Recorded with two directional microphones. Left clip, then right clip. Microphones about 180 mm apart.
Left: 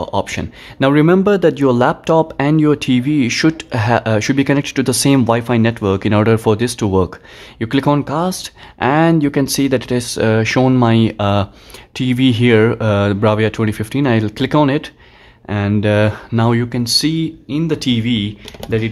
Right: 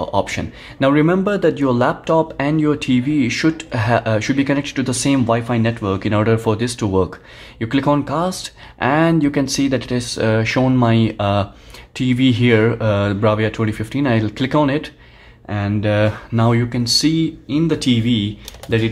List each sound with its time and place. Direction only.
0.0 s speech: 30° left (ahead or behind)